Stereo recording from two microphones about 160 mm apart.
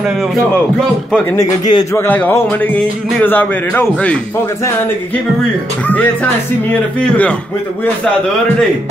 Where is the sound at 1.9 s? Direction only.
10° left (ahead or behind).